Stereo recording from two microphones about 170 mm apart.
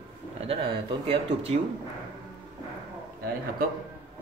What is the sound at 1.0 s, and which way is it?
Speech, 35° right (ahead or behind).